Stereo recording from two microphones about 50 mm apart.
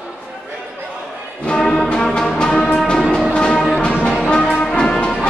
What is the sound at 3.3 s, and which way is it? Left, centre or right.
Music, centre.